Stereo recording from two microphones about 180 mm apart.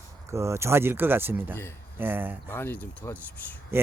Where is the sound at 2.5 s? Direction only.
10° left (ahead or behind).